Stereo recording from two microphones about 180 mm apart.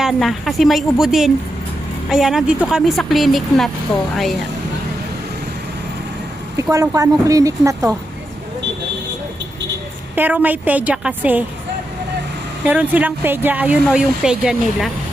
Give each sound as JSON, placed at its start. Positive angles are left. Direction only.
{"t": 0.0, "sound": "a woman's voice", "side_deg": 0}
{"t": 6.6, "sound": "speech", "side_deg": -20}
{"t": 10.2, "sound": "speech", "side_deg": -10}
{"t": 12.6, "sound": "speech", "side_deg": -10}